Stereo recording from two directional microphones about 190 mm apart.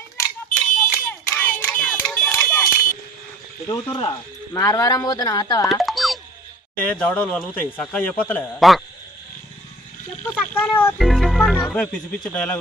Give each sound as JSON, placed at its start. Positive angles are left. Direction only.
{"t": 0.9, "sound": "a sound", "side_deg": 10}
{"t": 3.6, "sound": "speech", "side_deg": 20}
{"t": 5.7, "sound": "music", "side_deg": 0}
{"t": 6.8, "sound": "a man's voice", "side_deg": 10}
{"t": 10.2, "sound": "speech", "side_deg": 10}